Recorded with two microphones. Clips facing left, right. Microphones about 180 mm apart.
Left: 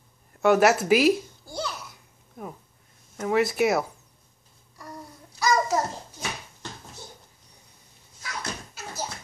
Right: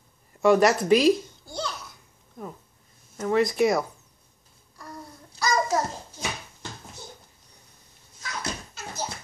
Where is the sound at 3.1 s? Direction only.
5° left (ahead or behind).